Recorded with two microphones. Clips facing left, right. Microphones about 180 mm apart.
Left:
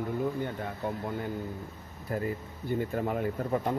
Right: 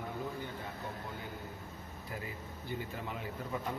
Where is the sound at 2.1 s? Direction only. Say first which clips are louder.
Left 12 dB; 50° left (ahead or behind).